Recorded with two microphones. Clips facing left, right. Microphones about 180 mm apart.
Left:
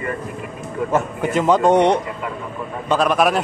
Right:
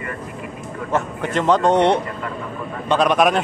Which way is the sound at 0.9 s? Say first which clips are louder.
Left 1 dB; 5° left (ahead or behind).